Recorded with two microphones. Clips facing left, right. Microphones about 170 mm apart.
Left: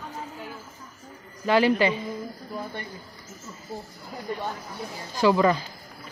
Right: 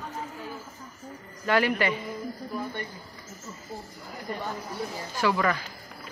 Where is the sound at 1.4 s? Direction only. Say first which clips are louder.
Left 4 dB; 20° left (ahead or behind).